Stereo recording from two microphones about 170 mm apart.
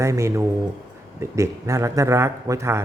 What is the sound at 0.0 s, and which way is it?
A man's voice, 15° right (ahead or behind).